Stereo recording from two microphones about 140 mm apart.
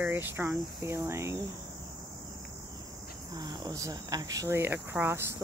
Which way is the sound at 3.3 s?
30° right (ahead or behind).